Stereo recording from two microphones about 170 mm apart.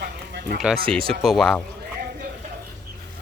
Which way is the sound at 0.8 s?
5° left (ahead or behind).